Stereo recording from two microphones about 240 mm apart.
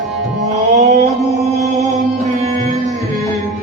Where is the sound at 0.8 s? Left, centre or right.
Right.